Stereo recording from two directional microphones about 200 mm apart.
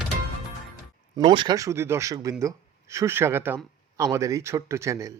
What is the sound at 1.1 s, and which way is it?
Speech, 25° right (ahead or behind).